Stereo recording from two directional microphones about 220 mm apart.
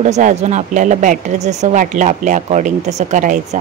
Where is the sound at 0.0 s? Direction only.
30° right (ahead or behind).